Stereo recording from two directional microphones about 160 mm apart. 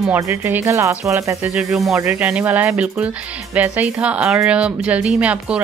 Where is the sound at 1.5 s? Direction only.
5° right (ahead or behind).